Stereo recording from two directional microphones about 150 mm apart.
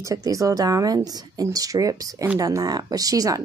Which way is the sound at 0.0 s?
25° right (ahead or behind).